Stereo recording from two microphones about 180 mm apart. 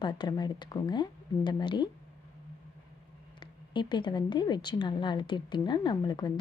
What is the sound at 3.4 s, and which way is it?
Speech, 25° left (ahead or behind).